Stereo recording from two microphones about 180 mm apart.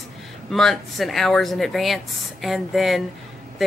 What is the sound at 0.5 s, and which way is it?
A woman's voice, centre (ahead or behind).